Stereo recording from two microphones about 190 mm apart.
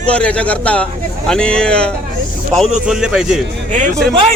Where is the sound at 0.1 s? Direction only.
5° left (ahead or behind).